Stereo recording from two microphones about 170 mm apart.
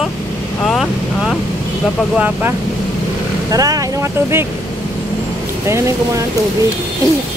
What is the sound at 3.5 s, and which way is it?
Speech, 20° right (ahead or behind).